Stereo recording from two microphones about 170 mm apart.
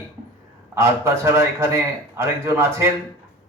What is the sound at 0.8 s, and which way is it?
A man's voice, 15° right (ahead or behind).